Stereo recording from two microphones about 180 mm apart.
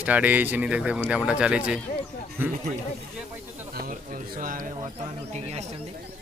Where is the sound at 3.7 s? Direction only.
50° right (ahead or behind).